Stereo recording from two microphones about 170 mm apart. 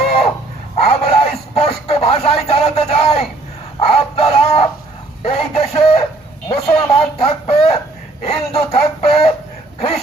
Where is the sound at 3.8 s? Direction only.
35° left (ahead or behind).